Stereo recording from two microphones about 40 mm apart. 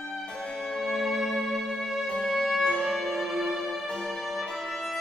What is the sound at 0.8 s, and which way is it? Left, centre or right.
Music, centre.